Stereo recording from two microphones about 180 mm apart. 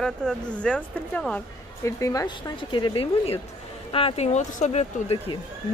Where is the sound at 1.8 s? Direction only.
15° left (ahead or behind); by 5.2 s 40° left (ahead or behind).